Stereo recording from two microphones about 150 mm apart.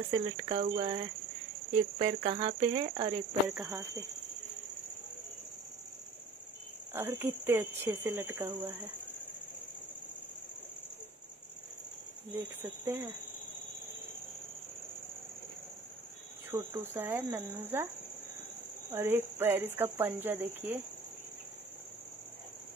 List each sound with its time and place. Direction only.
0.1 s speech: 30° right (ahead or behind)
6.9 s speech: 15° right (ahead or behind)
12.4 s speech: 15° right (ahead or behind)
16.4 s speech: 15° right (ahead or behind)
18.9 s speech: 15° right (ahead or behind)